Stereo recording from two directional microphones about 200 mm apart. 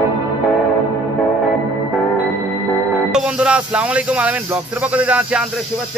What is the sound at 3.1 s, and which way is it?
Speech, 5° right (ahead or behind).